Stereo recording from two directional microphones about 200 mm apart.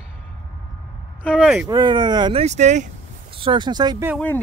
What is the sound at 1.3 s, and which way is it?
Speech, 5° right (ahead or behind).